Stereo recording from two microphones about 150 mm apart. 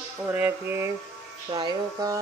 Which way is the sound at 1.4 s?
25° right (ahead or behind).